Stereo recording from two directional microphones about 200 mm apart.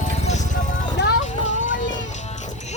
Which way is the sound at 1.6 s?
65° left (ahead or behind).